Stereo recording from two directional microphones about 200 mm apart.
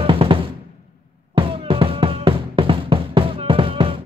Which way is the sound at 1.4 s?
25° right (ahead or behind).